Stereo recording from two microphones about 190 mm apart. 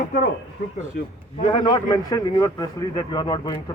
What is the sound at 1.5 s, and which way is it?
A man's voice, 25° left (ahead or behind).